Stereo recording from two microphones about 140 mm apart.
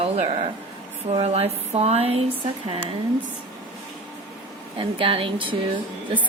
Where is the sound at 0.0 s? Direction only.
45° right (ahead or behind).